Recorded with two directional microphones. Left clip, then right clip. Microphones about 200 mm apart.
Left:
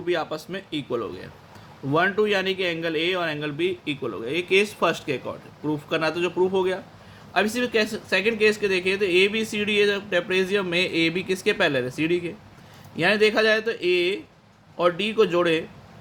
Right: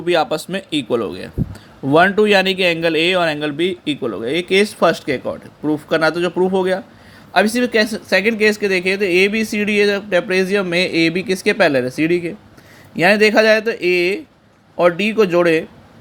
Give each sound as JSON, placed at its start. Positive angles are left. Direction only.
{"t": 0.0, "sound": "a man's voice", "side_deg": -40}